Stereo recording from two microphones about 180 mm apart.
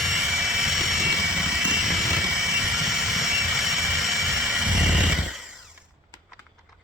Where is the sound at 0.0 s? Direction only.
Centre (ahead or behind).